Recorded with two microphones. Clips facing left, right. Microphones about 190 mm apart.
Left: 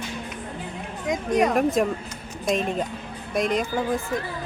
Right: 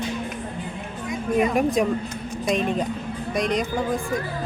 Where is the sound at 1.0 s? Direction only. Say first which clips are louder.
Left 1 dB; 85° left.